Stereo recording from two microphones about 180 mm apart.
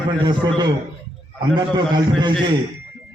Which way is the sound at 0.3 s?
25° right (ahead or behind).